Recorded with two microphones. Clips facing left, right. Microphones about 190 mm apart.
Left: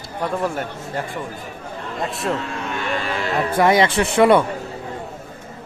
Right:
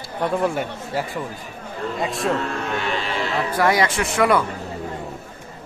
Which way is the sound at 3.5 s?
25° left (ahead or behind).